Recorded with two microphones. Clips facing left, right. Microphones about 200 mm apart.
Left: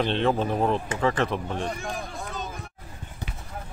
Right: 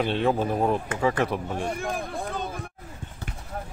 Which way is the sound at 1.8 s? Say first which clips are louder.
Right 4 dB; 55° right (ahead or behind).